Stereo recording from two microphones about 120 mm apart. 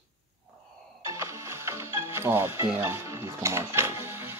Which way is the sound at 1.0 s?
25° right (ahead or behind).